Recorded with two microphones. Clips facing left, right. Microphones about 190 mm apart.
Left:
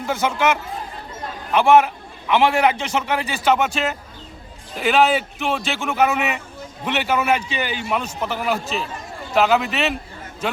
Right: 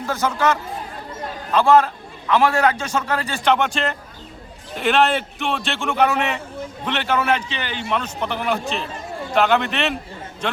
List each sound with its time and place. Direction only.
1.5 s a man's voice: 15° left (ahead or behind)
3.2 s a man's voice: 5° left (ahead or behind)